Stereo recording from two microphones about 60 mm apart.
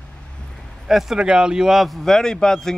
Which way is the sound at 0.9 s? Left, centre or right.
Centre.